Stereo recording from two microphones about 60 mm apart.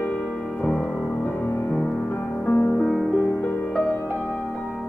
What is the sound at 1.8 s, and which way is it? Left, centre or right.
Music, left.